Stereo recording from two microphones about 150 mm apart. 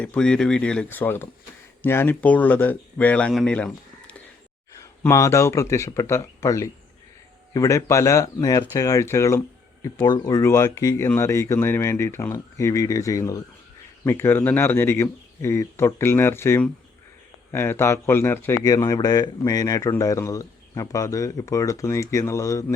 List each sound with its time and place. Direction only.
0.0 s a man's voice: 5° left (ahead or behind)
4.8 s a man's voice: 20° left (ahead or behind)